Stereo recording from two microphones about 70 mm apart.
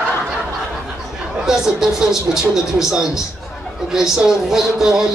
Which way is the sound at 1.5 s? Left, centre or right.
Centre.